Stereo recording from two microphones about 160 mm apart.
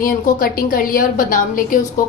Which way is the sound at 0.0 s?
60° left (ahead or behind).